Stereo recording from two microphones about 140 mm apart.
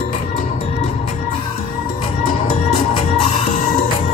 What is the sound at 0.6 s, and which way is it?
Music, 45° left (ahead or behind).